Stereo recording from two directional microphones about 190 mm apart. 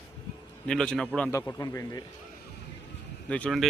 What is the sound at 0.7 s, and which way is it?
Speech, 5° left (ahead or behind).